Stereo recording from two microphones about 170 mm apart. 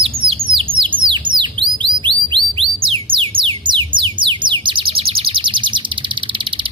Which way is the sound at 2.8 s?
30° right (ahead or behind).